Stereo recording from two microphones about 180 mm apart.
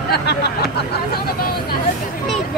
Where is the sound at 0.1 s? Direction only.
65° left (ahead or behind).